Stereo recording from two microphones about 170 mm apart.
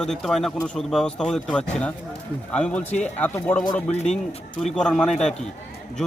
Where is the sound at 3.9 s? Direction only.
40° left (ahead or behind).